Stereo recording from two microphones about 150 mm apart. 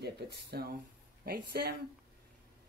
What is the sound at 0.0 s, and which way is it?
Speech, 90° right.